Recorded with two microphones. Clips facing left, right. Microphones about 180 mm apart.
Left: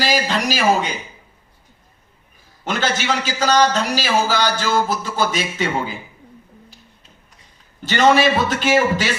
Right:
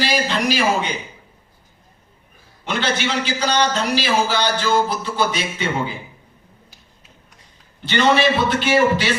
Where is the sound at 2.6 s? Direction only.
45° left (ahead or behind).